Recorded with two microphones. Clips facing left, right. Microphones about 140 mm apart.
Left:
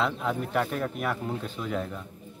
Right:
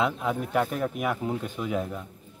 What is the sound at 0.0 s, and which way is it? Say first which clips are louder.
Speech: right 1 dB; 10° right (ahead or behind).